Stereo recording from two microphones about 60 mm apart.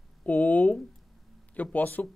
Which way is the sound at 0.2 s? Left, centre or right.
Left.